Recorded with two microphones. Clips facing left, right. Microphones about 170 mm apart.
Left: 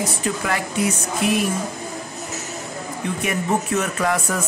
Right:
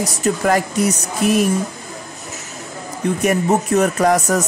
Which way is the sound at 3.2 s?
40° right (ahead or behind).